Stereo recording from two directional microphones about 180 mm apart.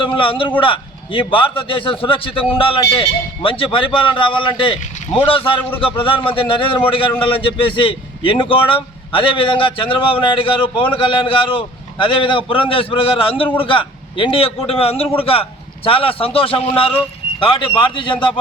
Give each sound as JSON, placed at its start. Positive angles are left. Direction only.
{"t": 0.0, "sound": "a man's voice", "side_deg": 30}